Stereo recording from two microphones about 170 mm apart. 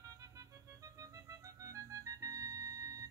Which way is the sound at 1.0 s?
20° right (ahead or behind).